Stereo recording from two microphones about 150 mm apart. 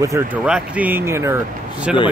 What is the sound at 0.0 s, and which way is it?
Speech, 20° right (ahead or behind).